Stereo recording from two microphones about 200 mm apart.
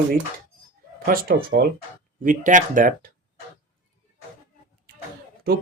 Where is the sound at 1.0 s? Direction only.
45° right (ahead or behind).